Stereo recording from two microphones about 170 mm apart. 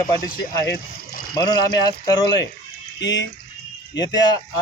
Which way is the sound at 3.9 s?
25° left (ahead or behind).